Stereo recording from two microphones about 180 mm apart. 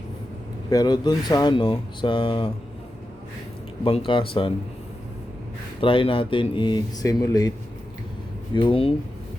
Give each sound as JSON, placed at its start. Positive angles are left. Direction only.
{"t": 0.7, "sound": "speech", "side_deg": 20}
{"t": 3.8, "sound": "speech", "side_deg": 30}
{"t": 5.8, "sound": "speech", "side_deg": 30}
{"t": 8.5, "sound": "speech", "side_deg": 30}